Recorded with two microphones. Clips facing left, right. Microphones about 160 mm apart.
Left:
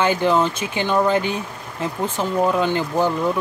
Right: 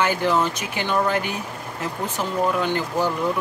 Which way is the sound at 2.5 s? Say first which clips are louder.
Left 3 dB; 20° left (ahead or behind).